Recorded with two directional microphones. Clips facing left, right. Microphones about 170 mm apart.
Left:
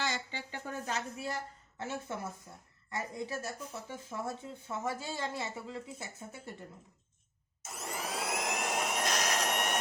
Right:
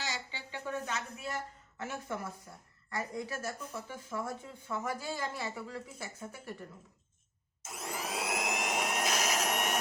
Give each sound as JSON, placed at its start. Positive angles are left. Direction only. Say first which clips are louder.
{"t": 0.0, "sound": "a sound", "louder": "left 4 dB", "side_deg": 50}
{"t": 1.8, "sound": "speech", "louder": "even", "side_deg": 25}
{"t": 7.6, "sound": "vacuum cleaner", "louder": "even", "side_deg": 0}